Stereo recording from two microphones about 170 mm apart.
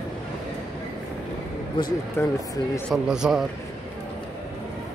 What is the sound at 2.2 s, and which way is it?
Speech, 15° left (ahead or behind).